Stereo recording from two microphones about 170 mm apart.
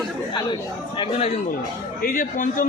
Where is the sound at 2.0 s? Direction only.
55° left (ahead or behind).